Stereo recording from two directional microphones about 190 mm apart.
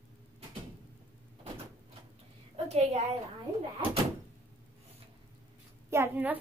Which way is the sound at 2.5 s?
35° right (ahead or behind).